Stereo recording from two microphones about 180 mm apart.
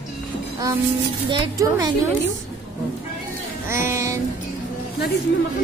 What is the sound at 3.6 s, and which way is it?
Speech, 15° right (ahead or behind).